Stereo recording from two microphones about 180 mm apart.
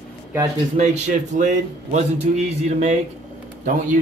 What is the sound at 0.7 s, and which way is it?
A man's voice, 40° right (ahead or behind).